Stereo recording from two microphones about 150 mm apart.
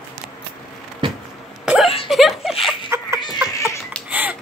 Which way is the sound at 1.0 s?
30° right (ahead or behind).